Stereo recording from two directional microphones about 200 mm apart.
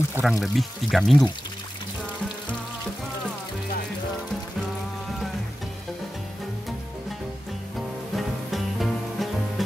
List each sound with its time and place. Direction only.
0.1 s speech: centre (ahead or behind)
8.5 s music: centre (ahead or behind)